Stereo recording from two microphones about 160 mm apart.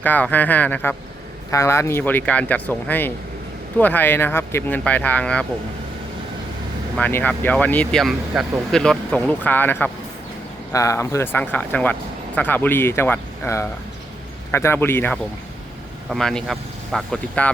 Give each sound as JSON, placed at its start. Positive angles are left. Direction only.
{"t": 0.0, "sound": "speech", "side_deg": 10}
{"t": 6.9, "sound": "speech", "side_deg": 10}
{"t": 16.0, "sound": "speech", "side_deg": 0}